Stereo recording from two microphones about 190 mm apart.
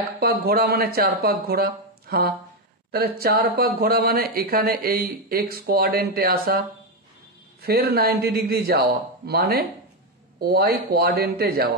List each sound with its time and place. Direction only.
0.2 s speech: 50° right (ahead or behind)
7.6 s speech: 55° right (ahead or behind)